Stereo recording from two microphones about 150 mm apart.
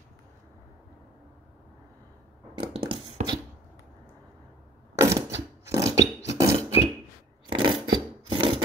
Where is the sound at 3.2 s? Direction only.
50° right (ahead or behind).